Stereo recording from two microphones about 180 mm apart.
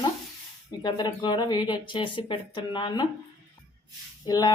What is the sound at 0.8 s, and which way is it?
Speech, 25° left (ahead or behind).